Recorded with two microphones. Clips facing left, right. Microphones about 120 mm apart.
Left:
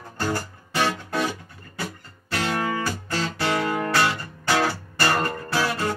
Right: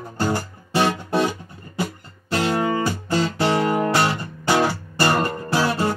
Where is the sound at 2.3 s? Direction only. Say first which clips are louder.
Right 5 dB; 25° right (ahead or behind).